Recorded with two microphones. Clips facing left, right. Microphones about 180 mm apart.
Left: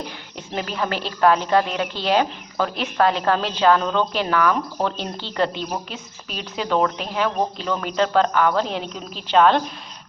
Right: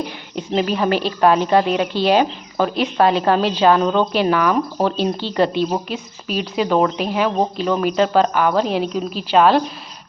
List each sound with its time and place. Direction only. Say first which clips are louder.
0.3 s a woman's voice: right 7 dB; 15° right (ahead or behind)
5.6 s a woman's voice: right 7 dB; 25° right (ahead or behind)
6.2 s speech: right 7 dB; 15° right (ahead or behind)